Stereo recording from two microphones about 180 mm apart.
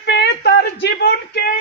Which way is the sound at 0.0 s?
70° left (ahead or behind).